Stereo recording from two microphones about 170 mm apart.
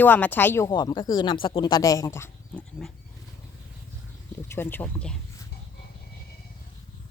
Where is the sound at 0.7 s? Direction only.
25° left (ahead or behind).